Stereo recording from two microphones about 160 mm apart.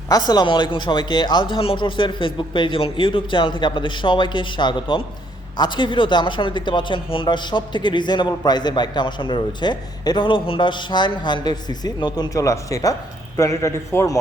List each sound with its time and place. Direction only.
0.1 s a man's voice: 25° left (ahead or behind)